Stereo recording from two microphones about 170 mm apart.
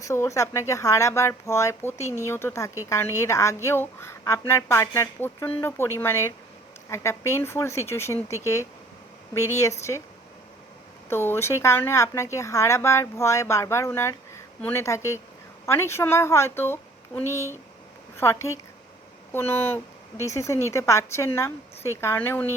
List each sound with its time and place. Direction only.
0.0 s a woman's voice: 15° left (ahead or behind)
11.1 s a woman's voice: 15° left (ahead or behind)